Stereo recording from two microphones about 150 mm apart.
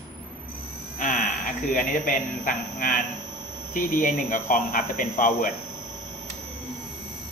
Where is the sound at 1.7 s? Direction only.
60° left (ahead or behind).